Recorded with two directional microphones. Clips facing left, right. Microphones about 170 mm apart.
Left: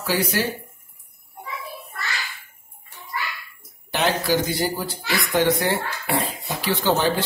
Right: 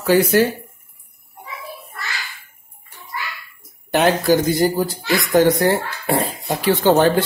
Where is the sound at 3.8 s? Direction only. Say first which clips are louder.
Right 6 dB; 50° right (ahead or behind).